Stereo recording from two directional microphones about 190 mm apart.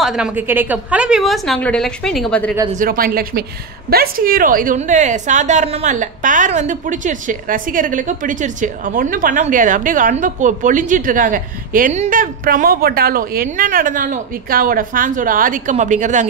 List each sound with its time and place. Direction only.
0.0 s a woman's voice: 5° right (ahead or behind)
2.8 s a woman's voice: 50° right (ahead or behind)